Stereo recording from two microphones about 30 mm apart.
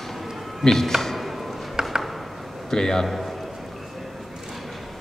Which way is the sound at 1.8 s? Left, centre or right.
Centre.